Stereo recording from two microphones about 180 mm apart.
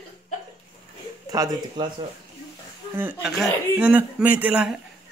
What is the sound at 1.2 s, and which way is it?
Speech, 20° right (ahead or behind).